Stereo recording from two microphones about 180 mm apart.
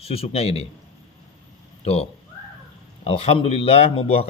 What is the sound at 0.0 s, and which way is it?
Speech, 35° left (ahead or behind).